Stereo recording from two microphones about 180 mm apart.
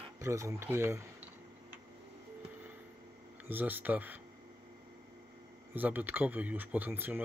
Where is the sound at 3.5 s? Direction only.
10° right (ahead or behind).